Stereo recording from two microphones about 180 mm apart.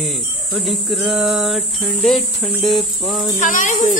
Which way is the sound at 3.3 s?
45° left (ahead or behind).